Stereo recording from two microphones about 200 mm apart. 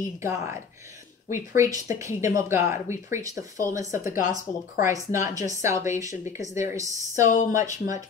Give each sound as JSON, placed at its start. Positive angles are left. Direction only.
{"t": 0.2, "sound": "speech", "side_deg": -15}